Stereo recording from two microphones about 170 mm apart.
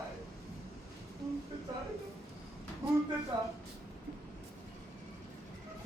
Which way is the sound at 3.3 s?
20° right (ahead or behind).